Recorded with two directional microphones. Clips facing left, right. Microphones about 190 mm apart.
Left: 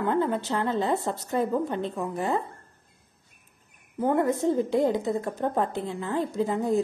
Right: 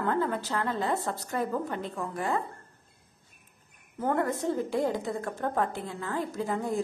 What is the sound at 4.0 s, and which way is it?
A woman's voice, 15° left (ahead or behind).